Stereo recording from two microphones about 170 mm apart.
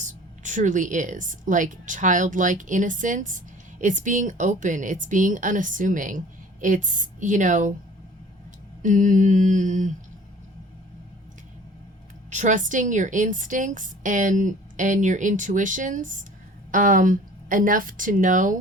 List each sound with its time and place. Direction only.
0.0 s speech: 45° right (ahead or behind)
8.8 s speech: 50° right (ahead or behind)
12.3 s speech: 45° right (ahead or behind)